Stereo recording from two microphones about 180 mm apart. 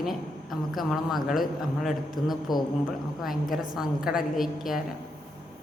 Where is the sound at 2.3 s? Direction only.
25° left (ahead or behind).